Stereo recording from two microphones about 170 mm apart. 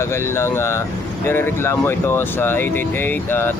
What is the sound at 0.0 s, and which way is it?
Speech, 15° left (ahead or behind).